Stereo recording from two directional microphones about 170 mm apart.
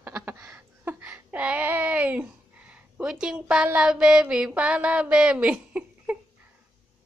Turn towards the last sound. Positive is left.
turn(degrees=-5)  # may be behind; listen again after turning